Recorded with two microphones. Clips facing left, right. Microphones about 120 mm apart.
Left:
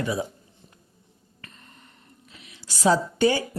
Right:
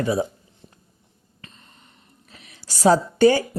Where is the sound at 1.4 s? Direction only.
20° right (ahead or behind).